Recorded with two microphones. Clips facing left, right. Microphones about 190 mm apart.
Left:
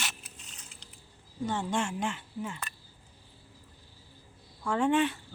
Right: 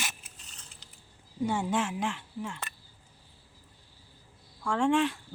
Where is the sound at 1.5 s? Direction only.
5° right (ahead or behind).